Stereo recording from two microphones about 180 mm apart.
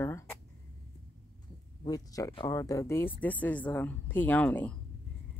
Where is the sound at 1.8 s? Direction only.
20° left (ahead or behind).